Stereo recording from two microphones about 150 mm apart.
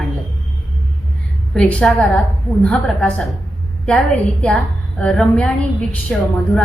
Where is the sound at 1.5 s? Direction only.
10° left (ahead or behind).